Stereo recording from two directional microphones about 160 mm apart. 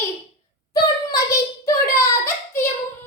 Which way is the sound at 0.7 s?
20° left (ahead or behind).